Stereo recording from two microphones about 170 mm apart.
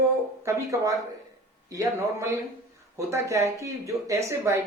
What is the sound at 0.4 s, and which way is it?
Speech, 15° right (ahead or behind).